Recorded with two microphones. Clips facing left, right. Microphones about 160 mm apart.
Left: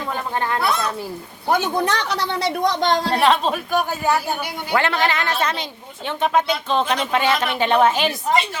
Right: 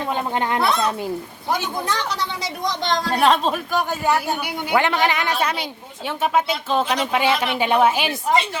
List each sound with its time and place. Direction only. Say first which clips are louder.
0.1 s speech: right 1 dB; 20° right (ahead or behind)
1.5 s speech: left 5 dB; 65° left (ahead or behind)
2.8 s speech: left 2 dB; 40° left (ahead or behind)
3.2 s speech: right 3 dB; centre (ahead or behind)
4.4 s speech: right 1 dB; 15° right (ahead or behind)